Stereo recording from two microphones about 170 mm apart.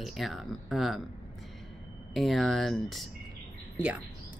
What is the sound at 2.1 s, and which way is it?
Speech, centre (ahead or behind).